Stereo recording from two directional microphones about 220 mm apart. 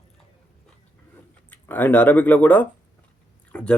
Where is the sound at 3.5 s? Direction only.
5° left (ahead or behind).